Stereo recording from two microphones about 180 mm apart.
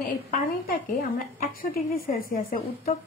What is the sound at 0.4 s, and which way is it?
A woman's voice, 50° left (ahead or behind).